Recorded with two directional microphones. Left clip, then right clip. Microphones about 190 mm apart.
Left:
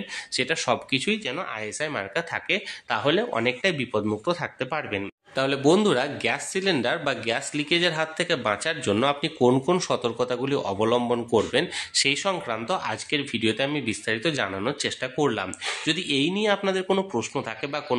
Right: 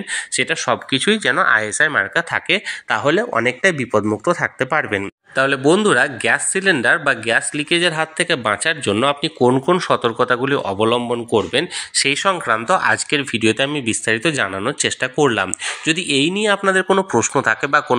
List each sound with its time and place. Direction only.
0.1 s speech: 15° right (ahead or behind)